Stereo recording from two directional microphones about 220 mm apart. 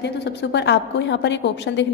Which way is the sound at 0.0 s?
50° left (ahead or behind).